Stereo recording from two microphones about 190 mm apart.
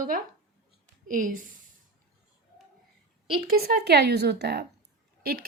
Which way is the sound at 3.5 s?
55° right (ahead or behind).